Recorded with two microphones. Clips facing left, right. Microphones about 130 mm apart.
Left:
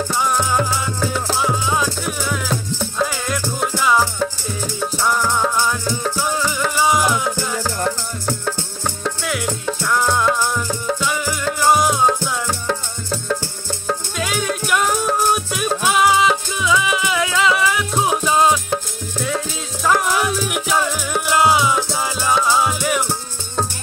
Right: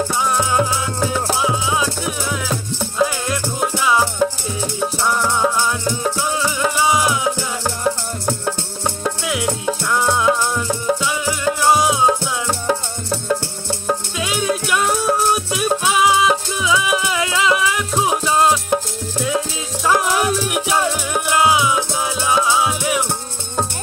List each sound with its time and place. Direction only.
0.1 s music: centre (ahead or behind)
3.4 s music: 20° right (ahead or behind)
3.8 s music: centre (ahead or behind)
6.3 s music: 5° right (ahead or behind)
7.3 s music: 25° right (ahead or behind)
8.8 s music: 10° right (ahead or behind)
12.2 s music: 20° right (ahead or behind)
14.1 s music: 5° right (ahead or behind)